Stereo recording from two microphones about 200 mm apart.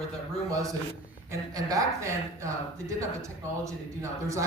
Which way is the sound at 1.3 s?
15° right (ahead or behind).